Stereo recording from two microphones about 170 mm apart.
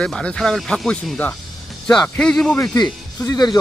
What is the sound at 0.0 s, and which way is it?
Speech, 5° left (ahead or behind).